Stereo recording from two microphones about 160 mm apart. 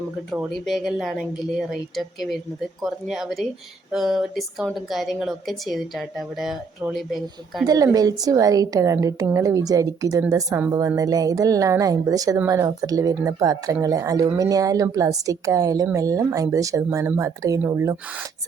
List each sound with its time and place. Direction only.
0.3 s a woman's voice: centre (ahead or behind)
7.6 s a woman's voice: 25° right (ahead or behind)